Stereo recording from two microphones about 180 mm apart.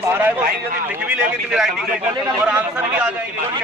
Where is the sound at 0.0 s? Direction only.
10° right (ahead or behind).